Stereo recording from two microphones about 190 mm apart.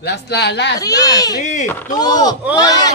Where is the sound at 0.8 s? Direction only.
20° left (ahead or behind).